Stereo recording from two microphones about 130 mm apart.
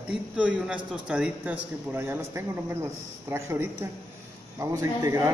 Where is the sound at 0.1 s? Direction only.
10° right (ahead or behind).